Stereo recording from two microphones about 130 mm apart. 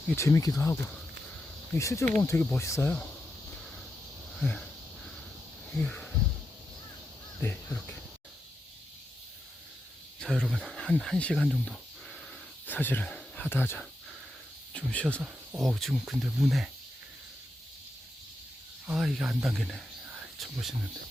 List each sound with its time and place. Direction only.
0.2 s speech: 25° left (ahead or behind)
2.1 s speech: 10° left (ahead or behind)
2.6 s speech: 20° left (ahead or behind)
4.4 s speech: 5° left (ahead or behind)
5.8 s speech: 5° left (ahead or behind)
10.2 s speech: centre (ahead or behind)
12.6 s speech: 15° left (ahead or behind)
15.2 s speech: 5° right (ahead or behind)
18.9 s speech: centre (ahead or behind)
20.1 s whispering: 5° right (ahead or behind)